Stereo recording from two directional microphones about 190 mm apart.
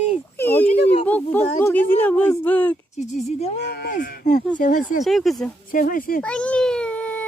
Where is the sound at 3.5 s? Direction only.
60° left (ahead or behind).